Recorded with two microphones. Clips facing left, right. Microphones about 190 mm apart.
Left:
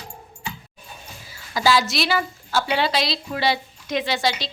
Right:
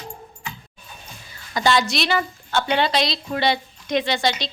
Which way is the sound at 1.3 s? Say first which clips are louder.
Even; 5° left (ahead or behind).